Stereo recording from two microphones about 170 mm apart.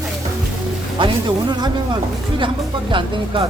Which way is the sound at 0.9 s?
25° right (ahead or behind).